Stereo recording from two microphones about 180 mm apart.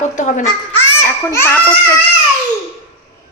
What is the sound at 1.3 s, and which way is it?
Speech, 15° left (ahead or behind).